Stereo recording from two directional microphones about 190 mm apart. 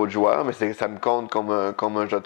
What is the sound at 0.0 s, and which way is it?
Speech, 20° left (ahead or behind).